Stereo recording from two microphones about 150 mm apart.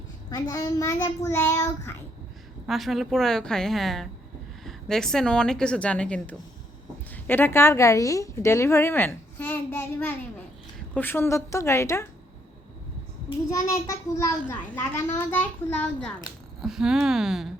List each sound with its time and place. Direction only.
0.3 s a child's voice: 25° left (ahead or behind)
2.6 s a woman's voice: centre (ahead or behind); by 12.0 s 20° left (ahead or behind)
13.5 s a child's voice: 20° left (ahead or behind)
16.6 s a woman's voice: centre (ahead or behind)